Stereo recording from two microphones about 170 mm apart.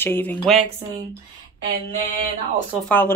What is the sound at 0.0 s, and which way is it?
Speech, 10° left (ahead or behind).